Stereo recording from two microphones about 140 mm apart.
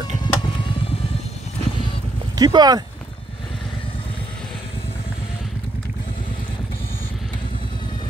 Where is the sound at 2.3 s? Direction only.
30° right (ahead or behind).